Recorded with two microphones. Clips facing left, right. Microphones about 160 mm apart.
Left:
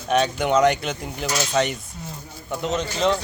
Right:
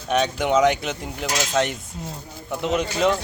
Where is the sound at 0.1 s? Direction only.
Centre (ahead or behind).